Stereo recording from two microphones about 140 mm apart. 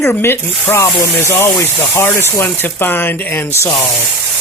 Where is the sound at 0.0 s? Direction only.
15° left (ahead or behind).